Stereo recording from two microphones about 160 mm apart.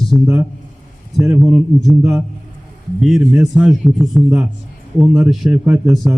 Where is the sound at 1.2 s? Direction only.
Centre (ahead or behind).